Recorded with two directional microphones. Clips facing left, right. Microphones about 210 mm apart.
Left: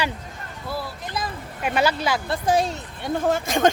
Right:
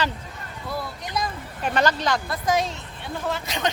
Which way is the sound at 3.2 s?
50° left (ahead or behind).